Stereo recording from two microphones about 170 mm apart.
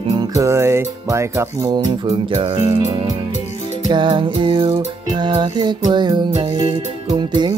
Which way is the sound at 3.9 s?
30° right (ahead or behind).